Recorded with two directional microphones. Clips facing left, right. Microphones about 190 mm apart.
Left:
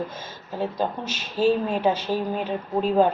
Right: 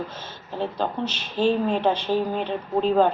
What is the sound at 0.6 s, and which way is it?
A woman's voice, 10° left (ahead or behind).